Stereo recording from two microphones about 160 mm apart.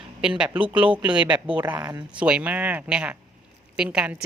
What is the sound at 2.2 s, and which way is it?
A woman's voice, 5° right (ahead or behind).